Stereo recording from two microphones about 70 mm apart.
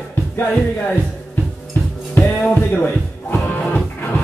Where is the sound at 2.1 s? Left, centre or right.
Centre.